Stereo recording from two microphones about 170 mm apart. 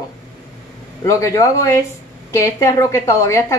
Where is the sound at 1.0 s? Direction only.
20° left (ahead or behind).